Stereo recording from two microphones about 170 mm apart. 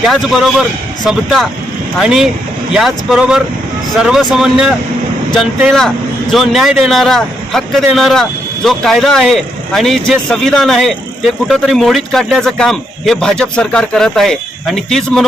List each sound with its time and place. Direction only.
0.0 s a man's voice: centre (ahead or behind)
6.3 s a man's voice: centre (ahead or behind)